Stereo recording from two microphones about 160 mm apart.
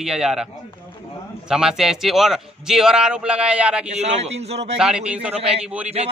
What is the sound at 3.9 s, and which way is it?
Speech, 40° right (ahead or behind).